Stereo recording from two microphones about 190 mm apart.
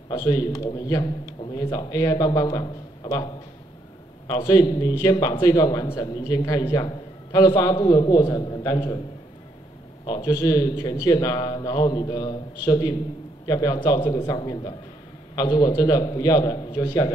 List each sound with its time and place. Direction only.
0.2 s a man's voice: 20° left (ahead or behind)
4.3 s a man's voice: 20° left (ahead or behind)
10.0 s a man's voice: 20° left (ahead or behind)